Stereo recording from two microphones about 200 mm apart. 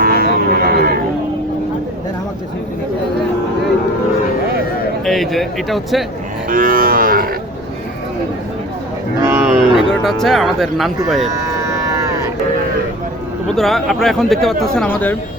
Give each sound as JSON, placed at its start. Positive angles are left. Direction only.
{"t": 0.0, "sound": "a sound", "side_deg": -50}
{"t": 5.0, "sound": "speech", "side_deg": 0}
{"t": 6.5, "sound": "livestock", "side_deg": -45}
{"t": 9.2, "sound": "cattle", "side_deg": -10}
{"t": 9.7, "sound": "speech", "side_deg": 0}
{"t": 11.4, "sound": "a sound", "side_deg": -15}
{"t": 13.6, "sound": "speech", "side_deg": 0}